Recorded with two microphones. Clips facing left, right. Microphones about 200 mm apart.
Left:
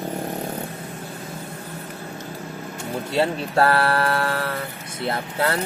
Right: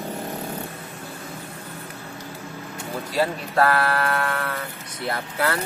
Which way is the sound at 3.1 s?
25° left (ahead or behind).